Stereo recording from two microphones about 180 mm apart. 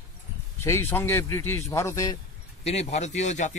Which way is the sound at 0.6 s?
15° left (ahead or behind).